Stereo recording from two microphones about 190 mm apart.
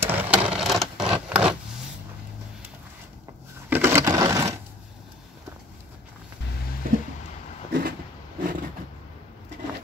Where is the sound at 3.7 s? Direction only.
15° right (ahead or behind).